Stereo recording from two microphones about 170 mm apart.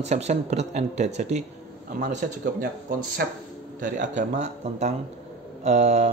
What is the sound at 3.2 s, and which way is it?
Speech, 70° right (ahead or behind).